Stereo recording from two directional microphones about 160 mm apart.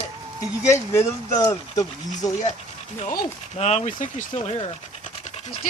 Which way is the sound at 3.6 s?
45° left (ahead or behind).